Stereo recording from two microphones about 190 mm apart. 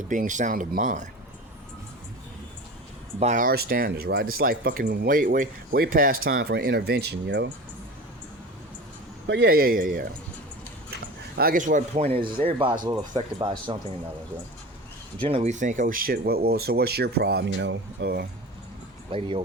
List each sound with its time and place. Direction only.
0.1 s speech: 40° right (ahead or behind)
3.2 s speech: 40° right (ahead or behind); by 7.5 s 70° right (ahead or behind)
9.2 s speech: 65° right (ahead or behind); by 10.1 s 45° right (ahead or behind)
11.3 s speech: 45° right (ahead or behind); by 13.1 s 25° right (ahead or behind)
15.2 s speech: 30° right (ahead or behind); by 18.3 s 60° right (ahead or behind)
19.1 s speech: 25° right (ahead or behind)